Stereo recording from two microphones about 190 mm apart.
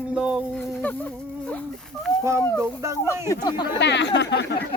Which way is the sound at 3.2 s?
20° left (ahead or behind).